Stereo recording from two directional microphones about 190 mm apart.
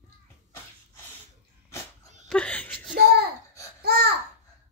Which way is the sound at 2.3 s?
5° left (ahead or behind).